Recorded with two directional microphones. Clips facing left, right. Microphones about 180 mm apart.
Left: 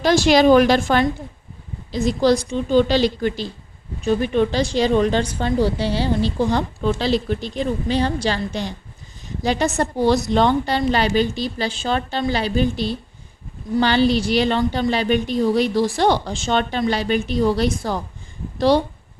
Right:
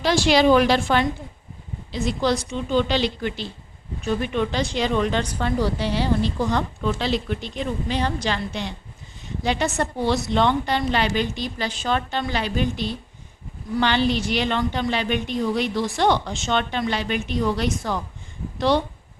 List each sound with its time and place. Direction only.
0.0 s speech: 45° left (ahead or behind)